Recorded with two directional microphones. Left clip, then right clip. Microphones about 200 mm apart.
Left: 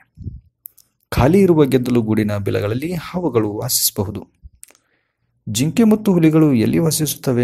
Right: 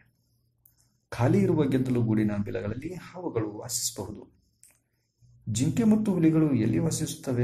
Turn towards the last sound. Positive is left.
turn(degrees=35)  # may be behind; listen again after turning